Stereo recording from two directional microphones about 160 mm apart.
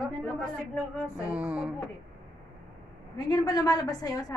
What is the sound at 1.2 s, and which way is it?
Speech, 5° right (ahead or behind).